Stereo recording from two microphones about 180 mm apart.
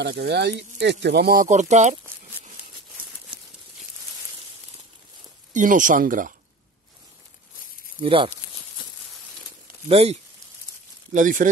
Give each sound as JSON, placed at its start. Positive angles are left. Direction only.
{"t": 0.0, "sound": "speech", "side_deg": -65}
{"t": 5.5, "sound": "speech", "side_deg": -45}
{"t": 8.0, "sound": "speech", "side_deg": -30}
{"t": 9.8, "sound": "speech", "side_deg": -35}
{"t": 11.1, "sound": "speech", "side_deg": -45}